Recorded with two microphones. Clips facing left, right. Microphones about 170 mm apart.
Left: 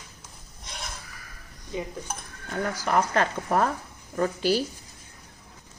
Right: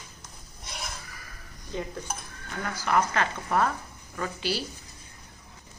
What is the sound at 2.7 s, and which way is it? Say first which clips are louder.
A woman's voice: left 1 dB; 40° left (ahead or behind).